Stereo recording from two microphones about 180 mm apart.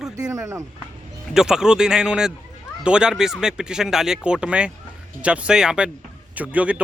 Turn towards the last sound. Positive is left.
turn(degrees=-10)  # may be behind; listen again after turning